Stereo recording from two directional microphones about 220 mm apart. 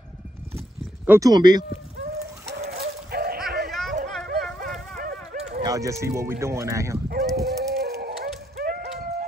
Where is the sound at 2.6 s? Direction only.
30° right (ahead or behind).